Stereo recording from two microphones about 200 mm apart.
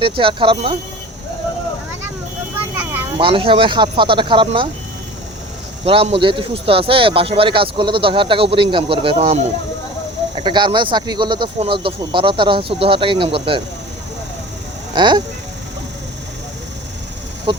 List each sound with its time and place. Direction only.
0.0 s speech: 25° right (ahead or behind)
2.7 s a sound: 10° right (ahead or behind)
3.2 s speech: 25° right (ahead or behind)
5.8 s speech: 30° right (ahead or behind)
14.9 s speech: 20° right (ahead or behind)
17.5 s speech: 25° right (ahead or behind)